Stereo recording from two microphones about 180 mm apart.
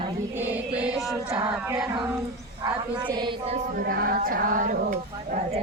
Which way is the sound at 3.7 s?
55° right (ahead or behind).